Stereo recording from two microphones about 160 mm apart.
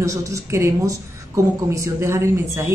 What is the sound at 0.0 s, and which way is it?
A woman's voice, 20° right (ahead or behind).